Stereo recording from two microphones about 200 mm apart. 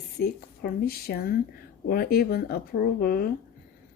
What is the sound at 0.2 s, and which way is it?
A woman's voice, 50° left (ahead or behind).